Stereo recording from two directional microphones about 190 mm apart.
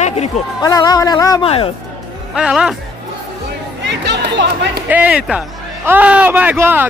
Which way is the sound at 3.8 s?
65° right (ahead or behind).